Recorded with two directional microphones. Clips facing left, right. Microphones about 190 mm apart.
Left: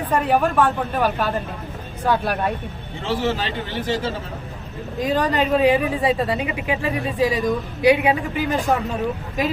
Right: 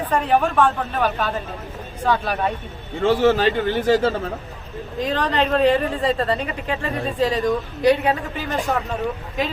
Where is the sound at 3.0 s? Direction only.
50° right (ahead or behind).